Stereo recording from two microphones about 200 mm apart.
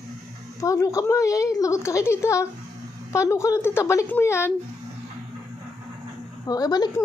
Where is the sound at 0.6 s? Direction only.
15° left (ahead or behind).